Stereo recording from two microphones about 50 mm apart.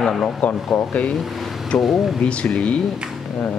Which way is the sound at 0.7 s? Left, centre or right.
Left.